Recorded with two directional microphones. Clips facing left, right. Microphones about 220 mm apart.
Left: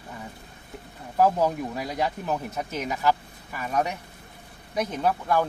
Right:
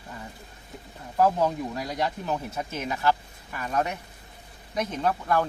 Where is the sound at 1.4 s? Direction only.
10° left (ahead or behind).